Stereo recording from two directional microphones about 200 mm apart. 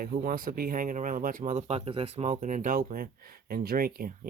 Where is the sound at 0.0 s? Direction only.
45° right (ahead or behind).